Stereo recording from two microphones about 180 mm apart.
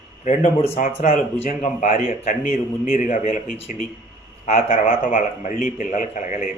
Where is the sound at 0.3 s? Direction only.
40° left (ahead or behind).